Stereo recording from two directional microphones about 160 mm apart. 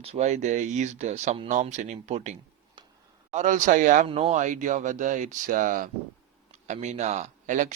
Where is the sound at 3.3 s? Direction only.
50° right (ahead or behind).